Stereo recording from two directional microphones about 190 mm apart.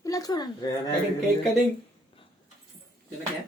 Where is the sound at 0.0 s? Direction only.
20° left (ahead or behind).